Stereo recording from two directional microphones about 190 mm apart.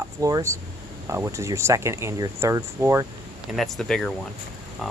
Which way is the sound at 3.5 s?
Centre (ahead or behind).